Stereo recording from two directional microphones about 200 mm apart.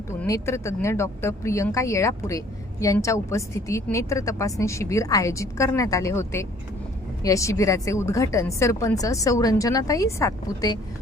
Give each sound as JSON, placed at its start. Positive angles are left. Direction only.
{"t": 0.2, "sound": "a woman's voice", "side_deg": 15}